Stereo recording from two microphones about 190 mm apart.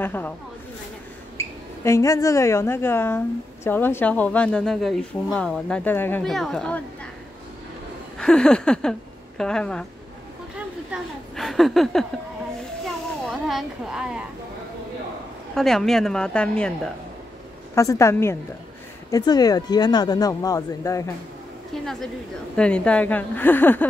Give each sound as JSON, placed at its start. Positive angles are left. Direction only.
{"t": 0.0, "sound": "a woman's voice", "side_deg": 10}
{"t": 1.9, "sound": "a woman's voice", "side_deg": 15}
{"t": 8.2, "sound": "a woman's voice", "side_deg": 5}
{"t": 10.9, "sound": "a sound", "side_deg": 0}
{"t": 15.5, "sound": "a woman's voice", "side_deg": 0}
{"t": 17.7, "sound": "a woman's voice", "side_deg": 15}
{"t": 22.6, "sound": "a woman's voice", "side_deg": 5}